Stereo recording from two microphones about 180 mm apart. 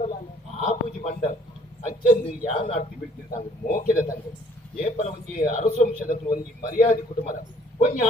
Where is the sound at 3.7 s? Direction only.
45° left (ahead or behind).